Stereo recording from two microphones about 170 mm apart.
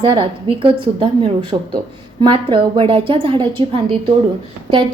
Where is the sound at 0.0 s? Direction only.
30° right (ahead or behind).